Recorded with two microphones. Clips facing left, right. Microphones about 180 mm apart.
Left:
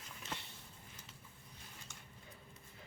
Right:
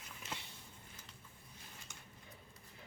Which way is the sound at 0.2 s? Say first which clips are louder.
Left 1 dB; 5° right (ahead or behind).